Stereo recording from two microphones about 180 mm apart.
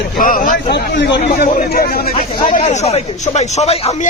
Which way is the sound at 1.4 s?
45° left (ahead or behind).